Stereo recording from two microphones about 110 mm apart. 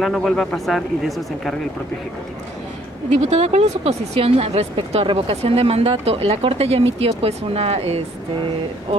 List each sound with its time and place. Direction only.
0.0 s speech: 5° left (ahead or behind)
3.2 s speech: 75° right (ahead or behind)